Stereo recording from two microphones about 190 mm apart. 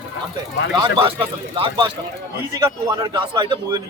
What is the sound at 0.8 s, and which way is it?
A man's voice, 30° right (ahead or behind).